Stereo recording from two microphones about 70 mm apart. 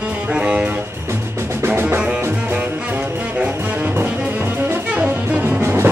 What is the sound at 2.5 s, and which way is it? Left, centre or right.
Music, centre.